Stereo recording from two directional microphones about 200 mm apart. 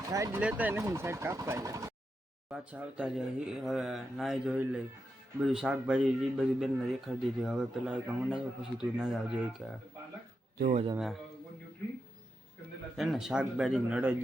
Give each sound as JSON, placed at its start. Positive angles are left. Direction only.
{"t": 0.1, "sound": "speech", "side_deg": -15}
{"t": 2.5, "sound": "a man's voice", "side_deg": -5}
{"t": 10.6, "sound": "speech", "side_deg": -35}
{"t": 10.9, "sound": "a man's voice", "side_deg": 0}
{"t": 13.0, "sound": "a man's voice", "side_deg": 0}